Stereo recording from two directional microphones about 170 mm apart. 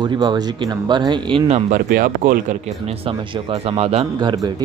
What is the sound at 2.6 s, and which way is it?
A man's voice, 35° right (ahead or behind).